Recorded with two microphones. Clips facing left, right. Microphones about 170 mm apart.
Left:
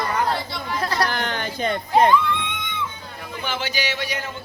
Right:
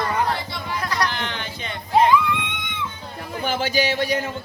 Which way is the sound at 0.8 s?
30° left (ahead or behind).